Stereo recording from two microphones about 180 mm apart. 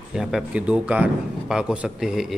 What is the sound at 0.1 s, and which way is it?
A man's voice, centre (ahead or behind).